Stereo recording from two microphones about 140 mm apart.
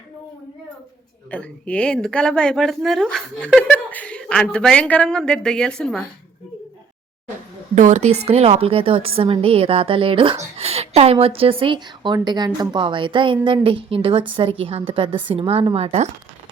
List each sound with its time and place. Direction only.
1.3 s a woman's voice: 10° left (ahead or behind)
7.8 s a woman's voice: 60° right (ahead or behind)